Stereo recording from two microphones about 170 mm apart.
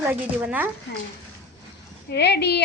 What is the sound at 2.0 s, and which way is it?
Speech, 75° left (ahead or behind).